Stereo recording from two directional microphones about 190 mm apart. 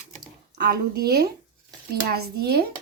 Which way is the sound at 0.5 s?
55° right (ahead or behind).